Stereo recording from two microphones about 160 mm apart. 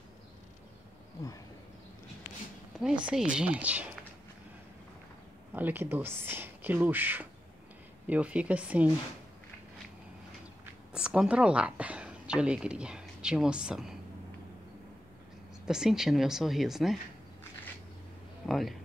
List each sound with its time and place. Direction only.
2.8 s speech: 5° right (ahead or behind)
5.5 s speech: 10° right (ahead or behind)
10.6 s speech: 5° right (ahead or behind)
15.6 s speech: 5° right (ahead or behind)
18.5 s speech: centre (ahead or behind)